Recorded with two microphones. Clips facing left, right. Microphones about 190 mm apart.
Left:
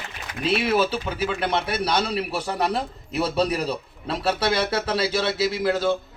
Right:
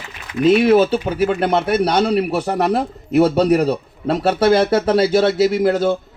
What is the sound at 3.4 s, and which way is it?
Speech, 60° right (ahead or behind).